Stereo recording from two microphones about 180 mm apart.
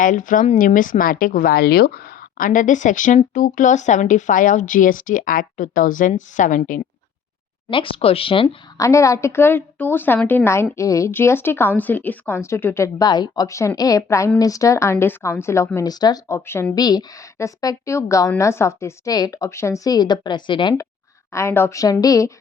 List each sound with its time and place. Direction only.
0.0 s speech: 45° left (ahead or behind)
7.7 s speech: 30° left (ahead or behind)
8.8 s a woman's voice: 15° left (ahead or behind)
21.3 s a woman's voice: 15° left (ahead or behind)